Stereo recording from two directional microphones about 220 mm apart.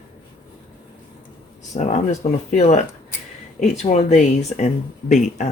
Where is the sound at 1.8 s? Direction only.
30° left (ahead or behind).